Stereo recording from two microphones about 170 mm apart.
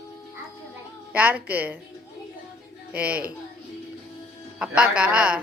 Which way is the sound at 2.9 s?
10° right (ahead or behind).